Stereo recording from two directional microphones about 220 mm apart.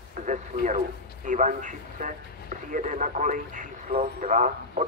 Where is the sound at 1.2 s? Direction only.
35° right (ahead or behind).